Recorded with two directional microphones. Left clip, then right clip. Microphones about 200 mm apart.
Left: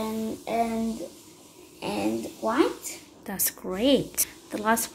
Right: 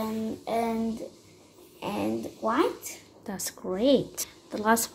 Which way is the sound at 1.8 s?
Centre (ahead or behind).